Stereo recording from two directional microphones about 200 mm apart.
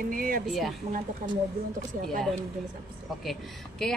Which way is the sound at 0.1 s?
45° right (ahead or behind).